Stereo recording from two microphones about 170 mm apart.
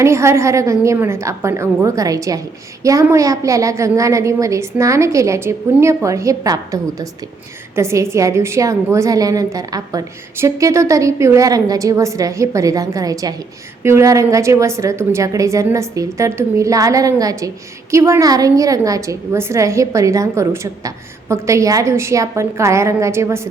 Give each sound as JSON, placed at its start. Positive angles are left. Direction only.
{"t": 0.0, "sound": "a woman's voice", "side_deg": -15}